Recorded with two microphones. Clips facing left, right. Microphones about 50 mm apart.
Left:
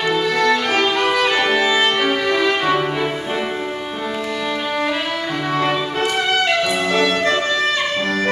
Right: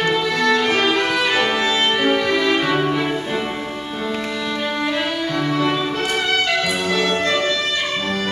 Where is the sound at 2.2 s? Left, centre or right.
Centre.